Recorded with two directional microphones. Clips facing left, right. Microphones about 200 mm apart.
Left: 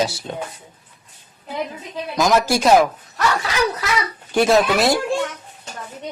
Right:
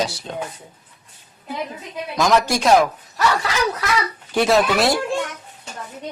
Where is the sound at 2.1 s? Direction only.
Centre (ahead or behind).